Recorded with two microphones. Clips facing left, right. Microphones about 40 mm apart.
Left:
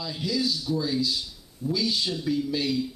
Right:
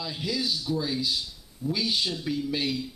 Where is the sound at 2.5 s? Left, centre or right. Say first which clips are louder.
Left 2 dB; centre.